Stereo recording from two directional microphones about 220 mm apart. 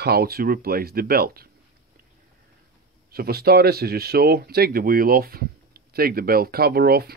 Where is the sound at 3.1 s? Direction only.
45° right (ahead or behind).